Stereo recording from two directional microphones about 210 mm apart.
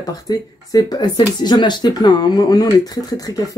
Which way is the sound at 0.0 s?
15° left (ahead or behind).